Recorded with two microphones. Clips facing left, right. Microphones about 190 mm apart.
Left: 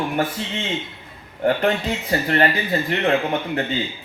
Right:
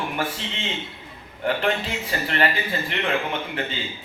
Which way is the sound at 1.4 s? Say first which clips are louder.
Left 4 dB; 40° left (ahead or behind).